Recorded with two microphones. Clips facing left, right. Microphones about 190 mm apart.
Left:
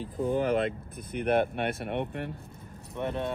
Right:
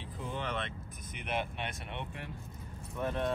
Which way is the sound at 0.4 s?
35° left (ahead or behind).